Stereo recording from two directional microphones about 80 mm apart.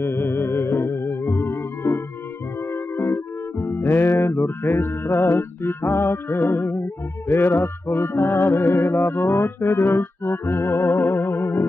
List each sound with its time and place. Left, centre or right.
0.0 s music: left
2.7 s speech: left